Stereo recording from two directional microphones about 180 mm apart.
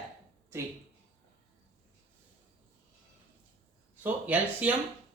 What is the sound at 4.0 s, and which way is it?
Speech, 10° right (ahead or behind).